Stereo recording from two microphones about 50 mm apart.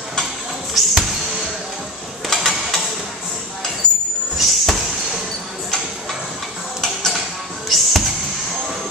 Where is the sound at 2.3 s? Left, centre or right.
Centre.